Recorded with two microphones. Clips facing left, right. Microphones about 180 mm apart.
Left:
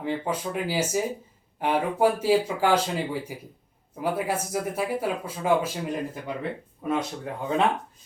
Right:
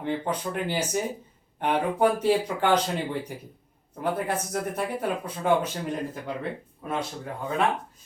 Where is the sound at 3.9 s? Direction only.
10° left (ahead or behind).